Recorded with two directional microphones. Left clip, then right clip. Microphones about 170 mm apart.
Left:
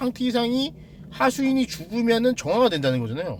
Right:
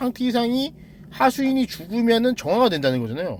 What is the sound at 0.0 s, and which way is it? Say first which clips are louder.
A man's voice: right 1 dB; 15° right (ahead or behind).